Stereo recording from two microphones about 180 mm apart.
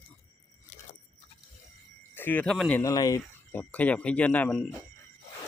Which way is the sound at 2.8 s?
20° left (ahead or behind).